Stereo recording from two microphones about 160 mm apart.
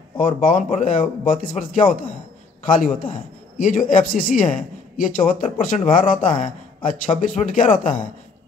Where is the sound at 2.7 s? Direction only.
60° left (ahead or behind).